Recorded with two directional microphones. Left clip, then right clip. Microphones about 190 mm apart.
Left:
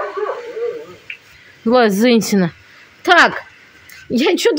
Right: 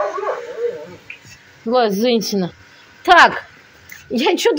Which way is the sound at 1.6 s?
45° left (ahead or behind).